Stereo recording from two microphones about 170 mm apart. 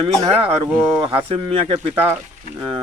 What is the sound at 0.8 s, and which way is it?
Speech, 15° right (ahead or behind).